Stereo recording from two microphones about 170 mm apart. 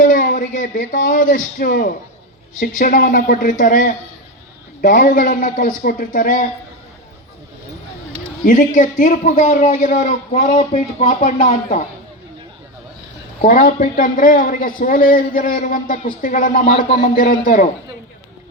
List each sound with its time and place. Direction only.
0.0 s a man's voice: 50° left (ahead or behind)
8.4 s a man's voice: 50° left (ahead or behind)
13.4 s a man's voice: 50° left (ahead or behind)